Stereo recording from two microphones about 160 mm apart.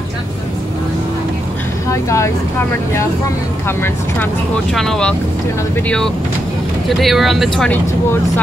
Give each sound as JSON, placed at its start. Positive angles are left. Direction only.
{"t": 1.9, "sound": "speech", "side_deg": 20}
{"t": 3.6, "sound": "speech", "side_deg": 15}
{"t": 4.7, "sound": "speech", "side_deg": 5}